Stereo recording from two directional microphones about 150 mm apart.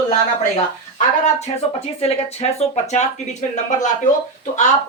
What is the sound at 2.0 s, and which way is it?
Speech, 45° left (ahead or behind).